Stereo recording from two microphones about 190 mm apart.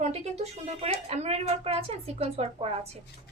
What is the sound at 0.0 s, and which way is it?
A woman's voice, 35° right (ahead or behind).